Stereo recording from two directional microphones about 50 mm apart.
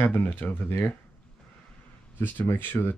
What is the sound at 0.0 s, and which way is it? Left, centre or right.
Speech, left.